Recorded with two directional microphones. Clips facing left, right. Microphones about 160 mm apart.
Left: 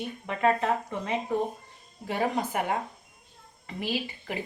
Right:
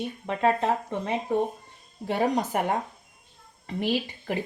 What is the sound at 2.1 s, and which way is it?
Speech, 40° right (ahead or behind).